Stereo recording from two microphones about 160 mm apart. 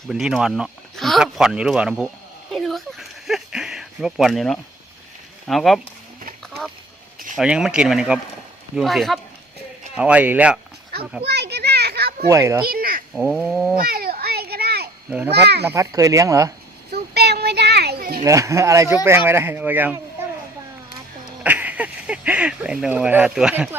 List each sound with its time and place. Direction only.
0.1 s speech: 5° right (ahead or behind)
2.5 s a sound: centre (ahead or behind)
5.5 s speech: centre (ahead or behind)
7.3 s speech: 5° right (ahead or behind)
11.2 s children playing: 90° right
12.3 s speech: 20° right (ahead or behind)
12.6 s a sound: 65° right (ahead or behind)
13.1 s speech: centre (ahead or behind)
13.7 s a sound: 70° right (ahead or behind)
15.3 s a child's voice: 90° right
15.6 s speech: 20° right (ahead or behind)
16.9 s children playing: 85° right
18.2 s speech: 20° right (ahead or behind)
21.4 s speech: 10° right (ahead or behind)